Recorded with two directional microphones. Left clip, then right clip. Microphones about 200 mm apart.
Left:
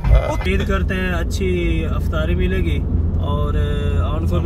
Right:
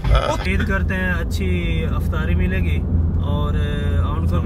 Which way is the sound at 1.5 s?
15° left (ahead or behind).